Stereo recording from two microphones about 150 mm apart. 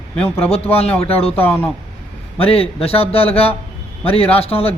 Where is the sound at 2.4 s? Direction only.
40° left (ahead or behind).